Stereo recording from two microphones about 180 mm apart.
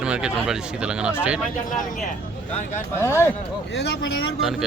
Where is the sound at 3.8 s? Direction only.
70° left (ahead or behind).